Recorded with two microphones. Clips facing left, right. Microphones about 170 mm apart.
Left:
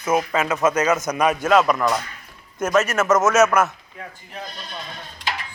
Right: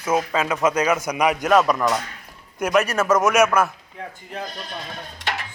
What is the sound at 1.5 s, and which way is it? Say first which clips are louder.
Speech: even; centre (ahead or behind).